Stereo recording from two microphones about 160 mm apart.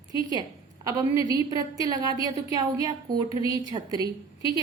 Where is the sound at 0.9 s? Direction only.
20° right (ahead or behind).